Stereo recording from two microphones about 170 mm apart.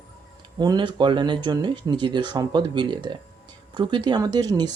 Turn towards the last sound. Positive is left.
turn(degrees=-25)  # may be behind; listen again after turning